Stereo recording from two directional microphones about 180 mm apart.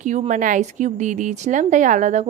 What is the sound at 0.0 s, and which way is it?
Speech, 45° right (ahead or behind).